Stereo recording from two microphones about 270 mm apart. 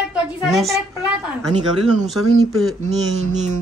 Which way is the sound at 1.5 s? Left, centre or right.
Right.